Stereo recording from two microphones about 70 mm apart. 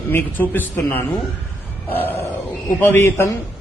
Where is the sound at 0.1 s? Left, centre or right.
Left.